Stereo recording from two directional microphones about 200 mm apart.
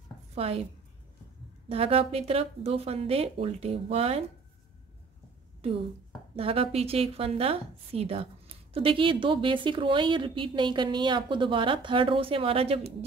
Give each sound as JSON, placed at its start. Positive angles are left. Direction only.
{"t": 0.3, "sound": "a woman's voice", "side_deg": -30}
{"t": 1.7, "sound": "a woman's voice", "side_deg": -30}
{"t": 5.6, "sound": "a woman's voice", "side_deg": -30}